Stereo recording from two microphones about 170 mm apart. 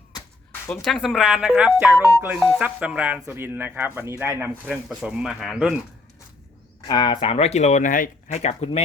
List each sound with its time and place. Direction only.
0.7 s speech: centre (ahead or behind)
6.8 s speech: 25° left (ahead or behind)